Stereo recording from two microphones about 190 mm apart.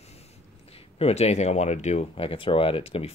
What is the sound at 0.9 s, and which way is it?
Speech, 35° left (ahead or behind).